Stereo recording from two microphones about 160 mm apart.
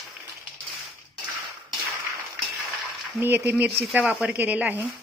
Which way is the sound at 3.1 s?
15° right (ahead or behind).